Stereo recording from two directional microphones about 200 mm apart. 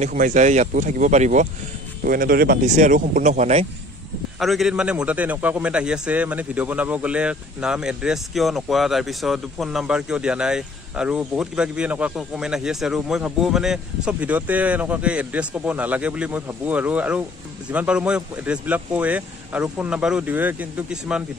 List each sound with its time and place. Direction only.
0.0 s speech: 40° right (ahead or behind)
2.0 s speech: 45° right (ahead or behind)
2.7 s speech: 40° right (ahead or behind)
4.4 s a man's voice: centre (ahead or behind)